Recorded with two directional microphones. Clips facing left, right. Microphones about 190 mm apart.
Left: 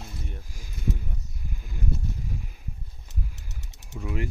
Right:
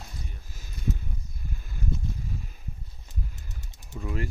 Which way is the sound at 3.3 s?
75° left (ahead or behind).